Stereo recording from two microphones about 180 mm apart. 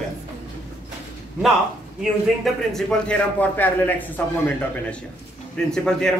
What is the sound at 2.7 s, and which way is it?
A man's voice, 5° left (ahead or behind).